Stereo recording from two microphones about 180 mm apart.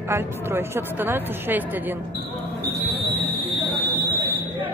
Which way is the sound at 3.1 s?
60° right (ahead or behind).